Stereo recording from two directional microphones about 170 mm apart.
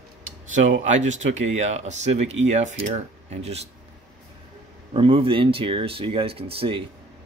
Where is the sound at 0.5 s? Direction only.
45° right (ahead or behind).